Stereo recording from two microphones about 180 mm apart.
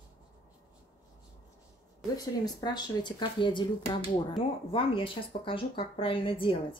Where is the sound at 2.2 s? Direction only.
20° left (ahead or behind).